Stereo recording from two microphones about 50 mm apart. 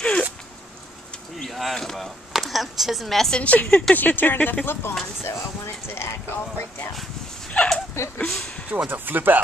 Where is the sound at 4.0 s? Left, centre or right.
Left.